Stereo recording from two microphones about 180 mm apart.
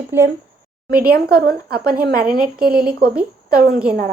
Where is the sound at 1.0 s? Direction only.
55° right (ahead or behind).